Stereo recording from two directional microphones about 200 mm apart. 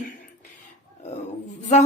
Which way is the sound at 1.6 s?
35° left (ahead or behind).